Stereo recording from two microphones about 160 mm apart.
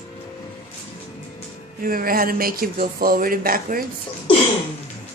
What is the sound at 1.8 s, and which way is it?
Speech, 60° right (ahead or behind).